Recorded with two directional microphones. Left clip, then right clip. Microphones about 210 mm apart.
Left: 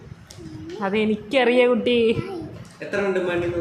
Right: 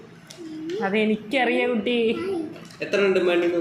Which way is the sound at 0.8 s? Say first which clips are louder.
Left 1 dB; 15° left (ahead or behind).